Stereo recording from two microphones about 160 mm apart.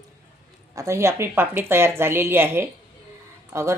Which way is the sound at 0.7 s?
20° right (ahead or behind).